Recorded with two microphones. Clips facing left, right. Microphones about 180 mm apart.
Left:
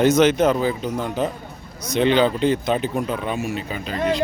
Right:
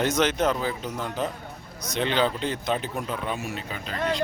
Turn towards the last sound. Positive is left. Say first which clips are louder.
# left 6 dB
turn(degrees=5)  # may be behind; listen again after turning